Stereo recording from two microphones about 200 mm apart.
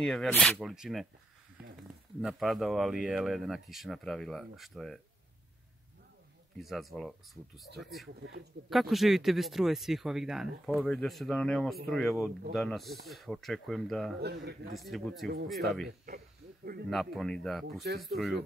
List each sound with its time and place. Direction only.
0.0 s speech: 5° left (ahead or behind)
6.6 s speech: centre (ahead or behind)
14.2 s speech: 55° right (ahead or behind)
14.7 s speech: centre (ahead or behind)
15.2 s speech: 55° right (ahead or behind)
15.5 s speech: centre (ahead or behind)
16.9 s speech: centre (ahead or behind)